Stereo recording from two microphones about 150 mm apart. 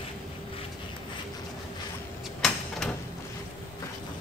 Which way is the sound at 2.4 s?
Centre (ahead or behind).